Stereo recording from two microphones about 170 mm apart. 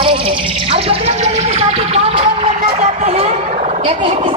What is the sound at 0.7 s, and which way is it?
Vehicle, 35° right (ahead or behind).